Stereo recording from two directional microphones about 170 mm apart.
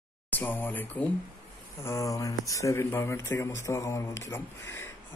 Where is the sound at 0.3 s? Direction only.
10° left (ahead or behind).